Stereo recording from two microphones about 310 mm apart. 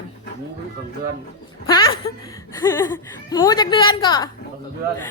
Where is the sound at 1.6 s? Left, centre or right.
Centre.